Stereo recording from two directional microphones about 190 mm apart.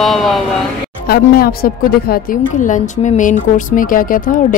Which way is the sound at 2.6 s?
40° left (ahead or behind).